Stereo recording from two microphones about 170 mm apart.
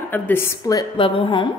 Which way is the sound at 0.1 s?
15° left (ahead or behind).